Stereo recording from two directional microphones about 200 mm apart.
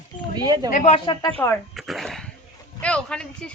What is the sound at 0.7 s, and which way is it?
Speech, 35° left (ahead or behind).